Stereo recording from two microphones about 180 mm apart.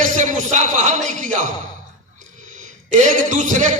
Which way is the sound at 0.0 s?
45° right (ahead or behind).